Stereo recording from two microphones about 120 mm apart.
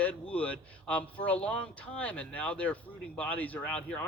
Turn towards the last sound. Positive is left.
turn(degrees=10)  # may be behind; listen again after turning